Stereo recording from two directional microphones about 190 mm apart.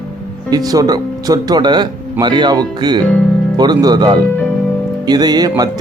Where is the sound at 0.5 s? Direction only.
20° right (ahead or behind).